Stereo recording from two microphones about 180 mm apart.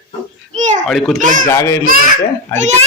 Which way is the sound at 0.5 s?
40° right (ahead or behind).